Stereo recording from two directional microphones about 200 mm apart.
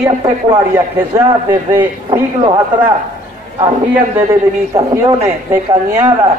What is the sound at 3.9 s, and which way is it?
A man's voice, 15° right (ahead or behind).